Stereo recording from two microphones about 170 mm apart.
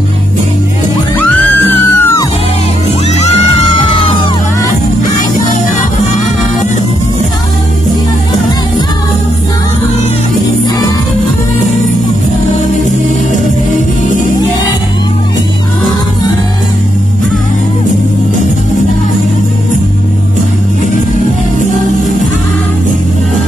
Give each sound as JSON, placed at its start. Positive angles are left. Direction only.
{"t": 1.7, "sound": "music", "side_deg": 15}